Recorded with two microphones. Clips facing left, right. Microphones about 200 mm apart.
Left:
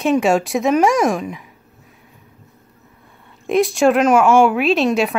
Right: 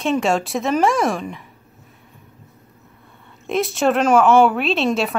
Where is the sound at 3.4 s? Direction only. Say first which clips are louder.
Left 4 dB; centre (ahead or behind).